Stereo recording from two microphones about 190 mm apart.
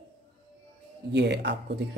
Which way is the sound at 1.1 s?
65° right (ahead or behind).